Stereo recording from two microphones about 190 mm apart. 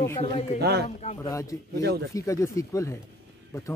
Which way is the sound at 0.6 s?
55° right (ahead or behind).